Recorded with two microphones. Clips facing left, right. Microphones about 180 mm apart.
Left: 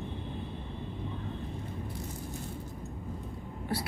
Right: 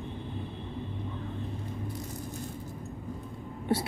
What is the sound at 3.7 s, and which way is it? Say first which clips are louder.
Speech: right 6 dB; 25° right (ahead or behind).